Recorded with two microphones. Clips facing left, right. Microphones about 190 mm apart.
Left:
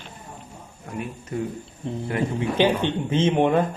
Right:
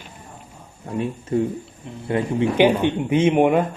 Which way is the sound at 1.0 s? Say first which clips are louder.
Right 8 dB; 30° right (ahead or behind).